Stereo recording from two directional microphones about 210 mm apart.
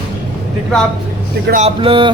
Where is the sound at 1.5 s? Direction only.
30° right (ahead or behind).